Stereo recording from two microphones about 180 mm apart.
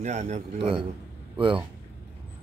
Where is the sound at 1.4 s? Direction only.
30° right (ahead or behind).